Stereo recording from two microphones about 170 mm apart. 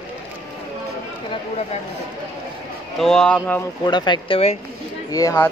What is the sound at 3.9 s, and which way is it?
Speech, 25° left (ahead or behind).